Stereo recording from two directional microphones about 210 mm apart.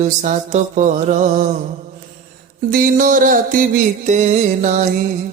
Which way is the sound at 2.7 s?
40° right (ahead or behind).